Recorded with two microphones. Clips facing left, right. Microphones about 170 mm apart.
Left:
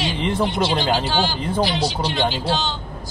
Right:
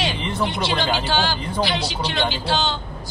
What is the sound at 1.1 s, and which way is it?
Speech, 70° right (ahead or behind).